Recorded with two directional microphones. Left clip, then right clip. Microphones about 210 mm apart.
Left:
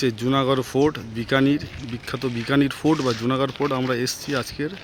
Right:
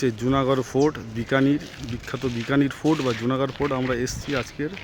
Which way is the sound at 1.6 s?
35° right (ahead or behind).